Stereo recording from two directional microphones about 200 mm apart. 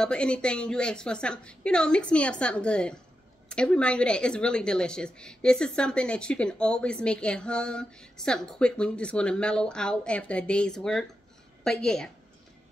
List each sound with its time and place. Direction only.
0.0 s speech: 5° left (ahead or behind)